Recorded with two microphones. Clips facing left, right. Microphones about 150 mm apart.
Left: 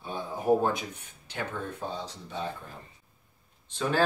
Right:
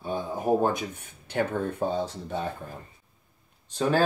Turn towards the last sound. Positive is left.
turn(degrees=-45)  # may be behind; listen again after turning